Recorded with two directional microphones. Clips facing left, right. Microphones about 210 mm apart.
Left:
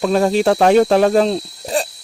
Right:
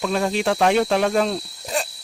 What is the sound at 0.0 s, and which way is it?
Speech, 40° left (ahead or behind).